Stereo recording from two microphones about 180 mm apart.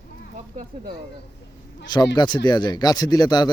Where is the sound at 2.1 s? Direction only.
25° left (ahead or behind).